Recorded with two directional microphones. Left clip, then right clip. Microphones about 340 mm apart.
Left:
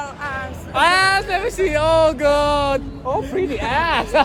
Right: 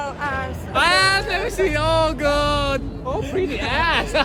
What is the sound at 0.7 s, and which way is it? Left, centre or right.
Speech, centre.